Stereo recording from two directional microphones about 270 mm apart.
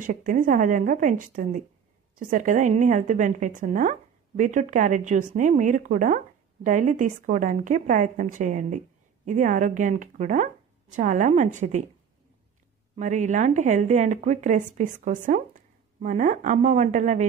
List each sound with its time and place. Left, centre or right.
0.0 s a woman's voice: right
12.9 s a woman's voice: right